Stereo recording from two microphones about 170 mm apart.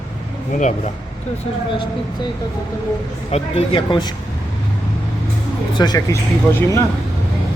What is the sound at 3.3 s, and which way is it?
Speech, 35° left (ahead or behind).